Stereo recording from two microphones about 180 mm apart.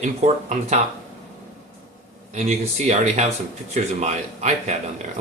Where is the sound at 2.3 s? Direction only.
40° right (ahead or behind).